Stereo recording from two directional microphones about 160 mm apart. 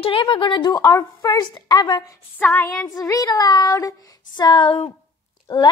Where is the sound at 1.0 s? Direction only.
20° left (ahead or behind).